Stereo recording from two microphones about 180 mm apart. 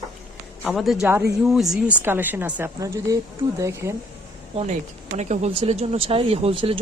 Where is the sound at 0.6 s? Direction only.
Centre (ahead or behind).